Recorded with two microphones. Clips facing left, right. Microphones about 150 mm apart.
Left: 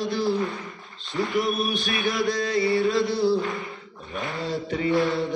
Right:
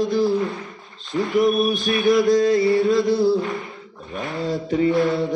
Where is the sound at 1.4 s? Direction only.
45° right (ahead or behind).